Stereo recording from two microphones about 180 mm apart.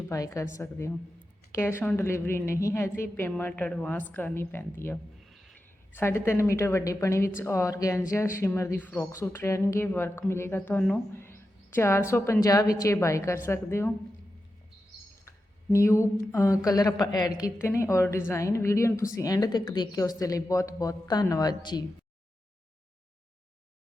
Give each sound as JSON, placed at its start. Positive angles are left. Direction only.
{"t": 0.1, "sound": "speech", "side_deg": 15}
{"t": 5.3, "sound": "a sound", "side_deg": 0}
{"t": 5.9, "sound": "speech", "side_deg": 15}
{"t": 15.7, "sound": "a woman's voice", "side_deg": 15}